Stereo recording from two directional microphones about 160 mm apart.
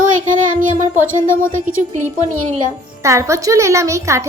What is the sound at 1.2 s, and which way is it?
Speech, 15° left (ahead or behind).